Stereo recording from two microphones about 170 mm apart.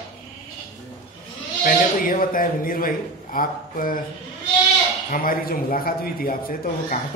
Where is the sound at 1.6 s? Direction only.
55° left (ahead or behind).